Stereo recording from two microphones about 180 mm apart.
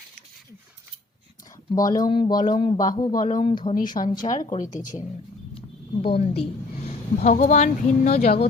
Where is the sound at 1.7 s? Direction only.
20° left (ahead or behind).